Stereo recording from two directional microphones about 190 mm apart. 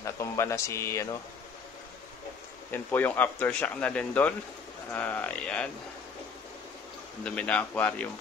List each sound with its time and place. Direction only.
0.0 s speech: 15° left (ahead or behind)
2.7 s speech: 10° left (ahead or behind)
7.2 s speech: 5° left (ahead or behind)